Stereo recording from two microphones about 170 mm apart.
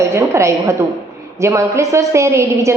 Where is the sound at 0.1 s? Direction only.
15° right (ahead or behind).